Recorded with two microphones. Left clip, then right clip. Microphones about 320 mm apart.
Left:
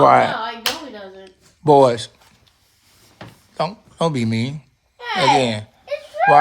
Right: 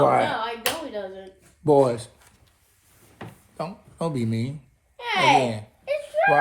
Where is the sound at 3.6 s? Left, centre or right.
Left.